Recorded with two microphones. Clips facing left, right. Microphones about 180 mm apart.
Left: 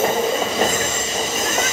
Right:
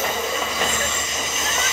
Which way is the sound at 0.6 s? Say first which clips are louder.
Left 5 dB; 35° left (ahead or behind).